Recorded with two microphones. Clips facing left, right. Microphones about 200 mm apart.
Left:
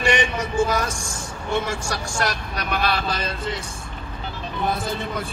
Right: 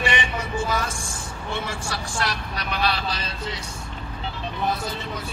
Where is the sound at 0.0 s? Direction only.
45° left (ahead or behind).